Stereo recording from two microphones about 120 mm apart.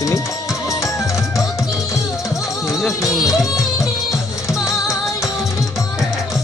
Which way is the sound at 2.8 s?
25° left (ahead or behind).